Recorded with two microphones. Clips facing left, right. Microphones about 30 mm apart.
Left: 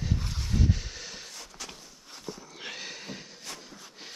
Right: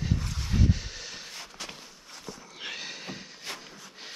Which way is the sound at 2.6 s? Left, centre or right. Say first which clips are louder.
Right 5 dB; centre.